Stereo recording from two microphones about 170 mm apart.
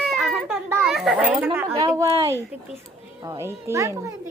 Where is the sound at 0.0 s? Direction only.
Centre (ahead or behind).